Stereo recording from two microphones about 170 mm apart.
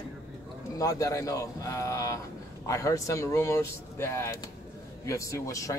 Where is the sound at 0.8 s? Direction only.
20° left (ahead or behind).